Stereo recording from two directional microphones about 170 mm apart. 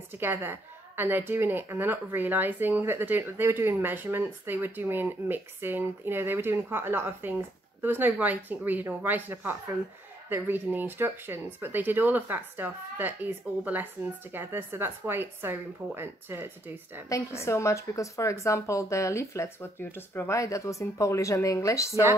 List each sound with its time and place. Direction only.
0.1 s a woman's voice: 10° right (ahead or behind)
17.1 s a woman's voice: 15° left (ahead or behind)